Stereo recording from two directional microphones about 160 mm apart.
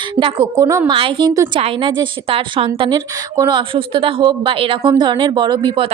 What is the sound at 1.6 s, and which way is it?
A woman's voice, 35° right (ahead or behind).